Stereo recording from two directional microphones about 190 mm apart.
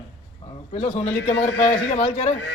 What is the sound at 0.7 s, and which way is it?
A man's voice, 35° left (ahead or behind).